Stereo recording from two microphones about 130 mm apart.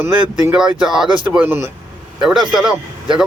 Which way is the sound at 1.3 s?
15° right (ahead or behind).